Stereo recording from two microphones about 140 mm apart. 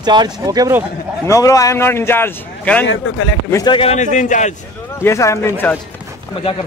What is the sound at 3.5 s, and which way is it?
Speech, 30° left (ahead or behind).